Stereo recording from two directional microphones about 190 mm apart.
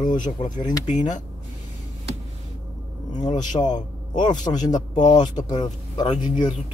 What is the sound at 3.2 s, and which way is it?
A man's voice, 25° left (ahead or behind).